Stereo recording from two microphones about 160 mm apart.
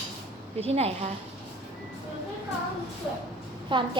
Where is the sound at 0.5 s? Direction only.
40° right (ahead or behind).